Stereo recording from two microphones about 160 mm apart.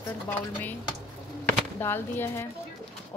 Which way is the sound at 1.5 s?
15° left (ahead or behind).